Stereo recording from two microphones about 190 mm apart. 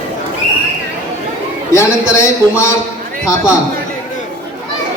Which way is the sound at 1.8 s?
15° left (ahead or behind).